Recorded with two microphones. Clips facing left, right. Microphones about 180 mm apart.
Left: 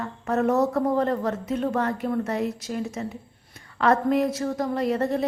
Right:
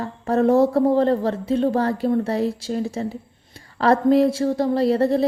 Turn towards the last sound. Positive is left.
turn(degrees=-35)  # may be behind; listen again after turning